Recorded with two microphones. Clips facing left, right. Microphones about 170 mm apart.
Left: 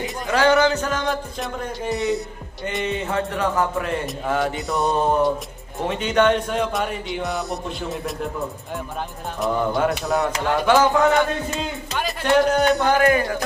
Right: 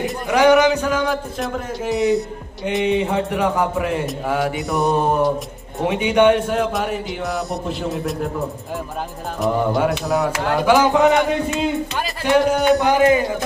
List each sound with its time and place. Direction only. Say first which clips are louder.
0.3 s a man's voice: right 4 dB; 15° right (ahead or behind); by 2.8 s centre (ahead or behind)
3.0 s a man's voice: right 4 dB; 15° right (ahead or behind); by 5.3 s centre (ahead or behind)
5.9 s a man's voice: right 4 dB; 10° right (ahead or behind)
9.4 s a man's voice: right 2 dB; centre (ahead or behind)
10.8 s a man's voice: right 2 dB; 15° right (ahead or behind)
12.2 s a man's voice: right 1 dB; 5° right (ahead or behind)
12.9 s a man's voice: right 3 dB; 20° right (ahead or behind)